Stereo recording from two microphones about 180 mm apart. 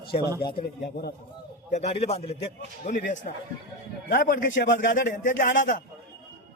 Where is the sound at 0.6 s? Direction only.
65° left (ahead or behind).